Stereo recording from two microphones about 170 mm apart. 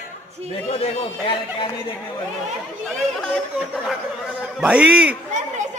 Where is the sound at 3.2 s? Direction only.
Centre (ahead or behind).